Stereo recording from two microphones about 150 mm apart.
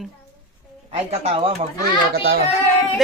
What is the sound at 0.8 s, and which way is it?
Speech, 45° right (ahead or behind).